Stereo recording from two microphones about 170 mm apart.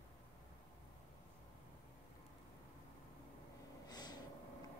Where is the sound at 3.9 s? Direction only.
25° left (ahead or behind).